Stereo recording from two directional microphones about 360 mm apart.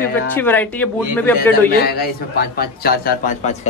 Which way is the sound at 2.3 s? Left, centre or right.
Left.